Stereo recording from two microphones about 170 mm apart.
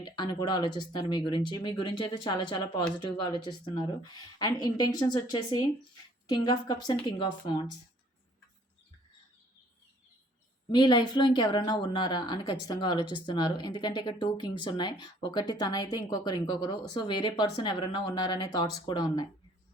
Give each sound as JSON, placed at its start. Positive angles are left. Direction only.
{"t": 0.0, "sound": "speech", "side_deg": 25}
{"t": 10.7, "sound": "speech", "side_deg": 25}